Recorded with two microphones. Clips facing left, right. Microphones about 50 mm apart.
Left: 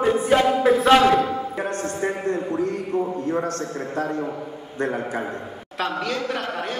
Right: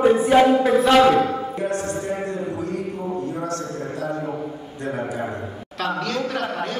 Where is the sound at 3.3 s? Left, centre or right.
Left.